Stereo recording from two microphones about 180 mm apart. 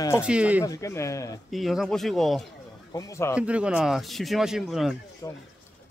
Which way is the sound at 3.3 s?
5° right (ahead or behind).